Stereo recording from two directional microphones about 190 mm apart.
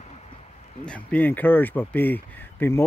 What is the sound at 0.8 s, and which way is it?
Speech, 5° left (ahead or behind).